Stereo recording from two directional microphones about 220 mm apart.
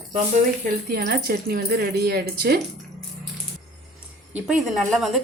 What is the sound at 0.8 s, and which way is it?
Speech, 45° right (ahead or behind).